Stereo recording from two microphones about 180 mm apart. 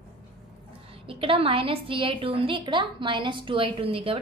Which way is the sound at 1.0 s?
30° right (ahead or behind).